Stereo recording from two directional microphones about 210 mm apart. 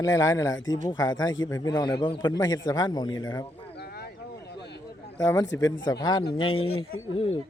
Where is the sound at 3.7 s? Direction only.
50° left (ahead or behind).